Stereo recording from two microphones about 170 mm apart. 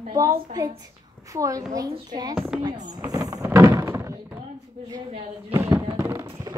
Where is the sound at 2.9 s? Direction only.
20° right (ahead or behind).